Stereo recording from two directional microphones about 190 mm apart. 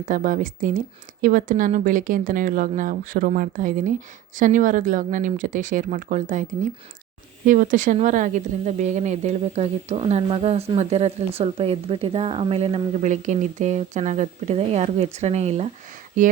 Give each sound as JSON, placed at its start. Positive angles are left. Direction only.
{"t": 0.0, "sound": "speech", "side_deg": -45}